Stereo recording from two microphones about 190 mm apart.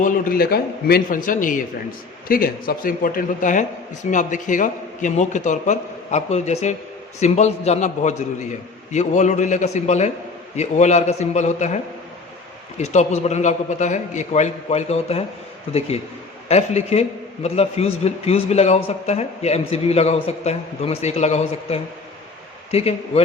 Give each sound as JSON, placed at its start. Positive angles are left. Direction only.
{"t": 0.0, "sound": "a man's voice", "side_deg": 45}
{"t": 12.8, "sound": "a man's voice", "side_deg": 35}
{"t": 16.5, "sound": "a man's voice", "side_deg": 35}